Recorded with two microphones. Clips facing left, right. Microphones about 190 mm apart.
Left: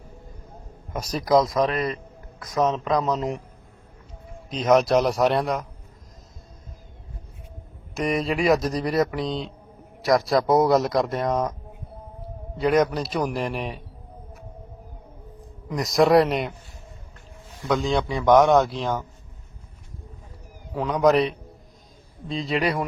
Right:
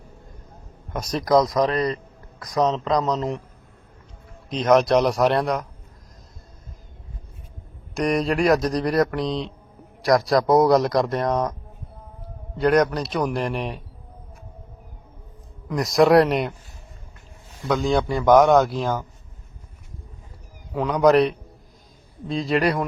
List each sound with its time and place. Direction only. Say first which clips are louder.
0.9 s speech: right 1 dB; 10° left (ahead or behind)
1.7 s a man's voice: right 3 dB; 15° left (ahead or behind)
3.1 s a man's voice: right 1 dB; 10° left (ahead or behind)
4.4 s speech: right 1 dB; 5° left (ahead or behind)
7.9 s speech: right 3 dB; centre (ahead or behind)
12.5 s speech: right 2 dB; centre (ahead or behind)
15.7 s speech: right 2 dB; centre (ahead or behind)
17.7 s speech: right 2 dB; centre (ahead or behind)
20.7 s speech: right 2 dB; centre (ahead or behind)